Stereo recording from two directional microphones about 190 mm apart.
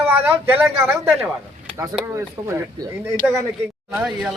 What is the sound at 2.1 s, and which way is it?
Speech, 15° right (ahead or behind).